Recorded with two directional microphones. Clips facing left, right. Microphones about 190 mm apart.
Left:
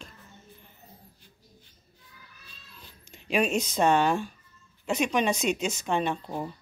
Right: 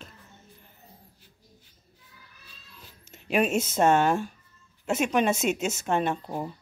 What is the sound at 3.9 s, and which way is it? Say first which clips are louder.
Speech: right 1 dB; 45° right (ahead or behind).